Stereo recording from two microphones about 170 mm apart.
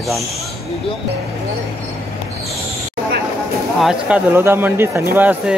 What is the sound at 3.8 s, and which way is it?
Speech, 5° right (ahead or behind).